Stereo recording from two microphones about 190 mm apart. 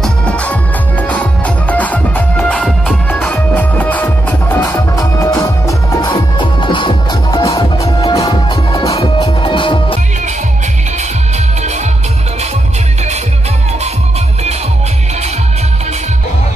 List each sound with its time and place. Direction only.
0.0 s music: 5° left (ahead or behind)
1.7 s music: 10° left (ahead or behind); by 9.9 s 25° left (ahead or behind)